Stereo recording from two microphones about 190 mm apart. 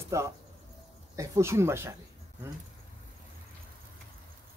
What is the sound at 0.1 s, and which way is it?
Speech, 15° right (ahead or behind).